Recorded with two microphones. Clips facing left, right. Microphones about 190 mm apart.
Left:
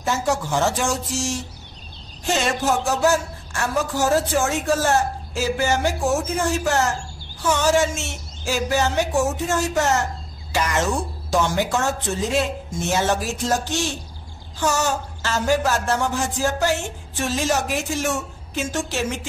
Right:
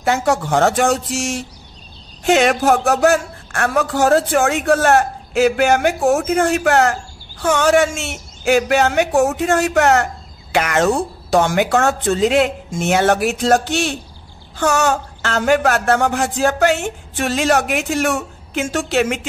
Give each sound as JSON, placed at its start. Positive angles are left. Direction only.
{"t": 0.0, "sound": "speech", "side_deg": -65}